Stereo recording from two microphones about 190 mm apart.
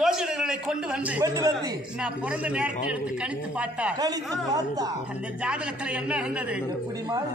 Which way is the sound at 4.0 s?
20° right (ahead or behind).